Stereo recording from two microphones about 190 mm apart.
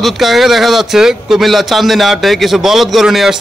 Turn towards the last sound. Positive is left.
turn(degrees=0)  # may be behind; listen again after turning